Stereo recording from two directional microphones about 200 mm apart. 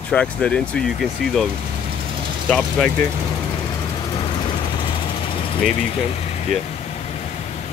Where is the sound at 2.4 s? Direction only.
5° left (ahead or behind).